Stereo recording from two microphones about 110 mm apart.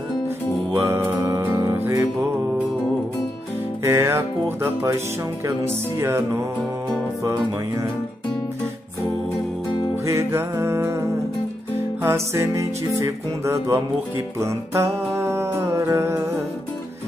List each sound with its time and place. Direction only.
0.7 s music: 20° right (ahead or behind)
3.8 s music: 25° right (ahead or behind)
7.3 s music: 30° right (ahead or behind)
10.0 s music: 25° right (ahead or behind)